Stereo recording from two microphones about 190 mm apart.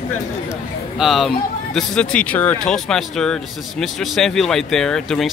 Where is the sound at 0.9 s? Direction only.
Centre (ahead or behind).